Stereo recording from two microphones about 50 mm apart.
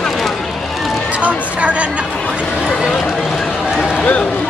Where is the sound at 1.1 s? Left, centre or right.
Right.